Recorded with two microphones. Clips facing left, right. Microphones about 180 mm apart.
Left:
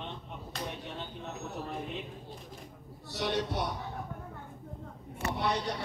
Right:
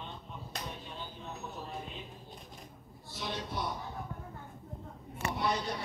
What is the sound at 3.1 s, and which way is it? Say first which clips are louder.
Speech: left 6 dB; 70° left (ahead or behind).